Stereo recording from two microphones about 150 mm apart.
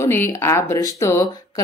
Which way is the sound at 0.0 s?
15° left (ahead or behind).